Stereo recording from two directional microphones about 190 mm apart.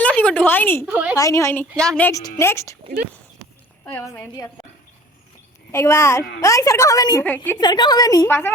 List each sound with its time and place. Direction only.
0.0 s a sound: 5° left (ahead or behind)
0.9 s a woman's voice: 10° right (ahead or behind)
1.1 s a woman's voice: 15° left (ahead or behind)
1.7 s a woman's voice: 5° left (ahead or behind)
3.8 s a woman's voice: 10° left (ahead or behind)
5.7 s a woman's voice: 15° left (ahead or behind)
7.6 s a woman's voice: 20° left (ahead or behind)